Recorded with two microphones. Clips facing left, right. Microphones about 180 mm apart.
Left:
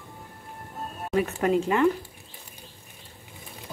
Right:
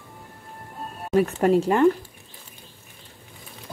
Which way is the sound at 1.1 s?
40° right (ahead or behind).